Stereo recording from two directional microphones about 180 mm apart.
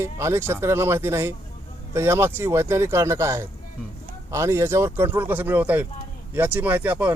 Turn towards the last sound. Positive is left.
turn(degrees=-10)  # may be behind; listen again after turning